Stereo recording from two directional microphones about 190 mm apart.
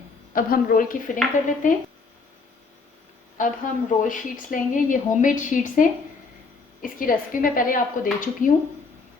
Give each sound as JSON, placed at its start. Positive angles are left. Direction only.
{"t": 0.3, "sound": "speech", "side_deg": 50}
{"t": 3.3, "sound": "speech", "side_deg": 45}